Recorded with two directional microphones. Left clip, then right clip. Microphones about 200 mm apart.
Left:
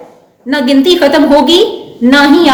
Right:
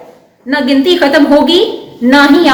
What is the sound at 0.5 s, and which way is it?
A woman's voice, 60° left (ahead or behind).